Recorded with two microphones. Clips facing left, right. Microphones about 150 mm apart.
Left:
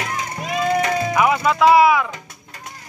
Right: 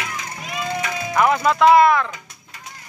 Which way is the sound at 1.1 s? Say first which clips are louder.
Right 2 dB; 5° left (ahead or behind).